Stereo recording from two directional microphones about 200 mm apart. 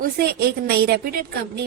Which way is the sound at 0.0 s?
50° right (ahead or behind).